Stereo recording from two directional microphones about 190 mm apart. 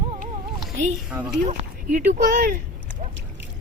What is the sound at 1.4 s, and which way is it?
Speech, 40° right (ahead or behind).